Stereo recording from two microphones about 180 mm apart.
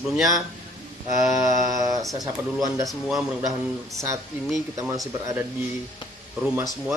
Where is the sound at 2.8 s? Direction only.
Centre (ahead or behind).